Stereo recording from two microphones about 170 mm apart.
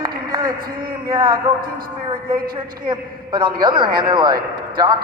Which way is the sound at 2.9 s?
25° right (ahead or behind).